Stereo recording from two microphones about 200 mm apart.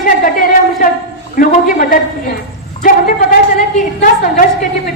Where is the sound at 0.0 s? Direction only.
40° left (ahead or behind).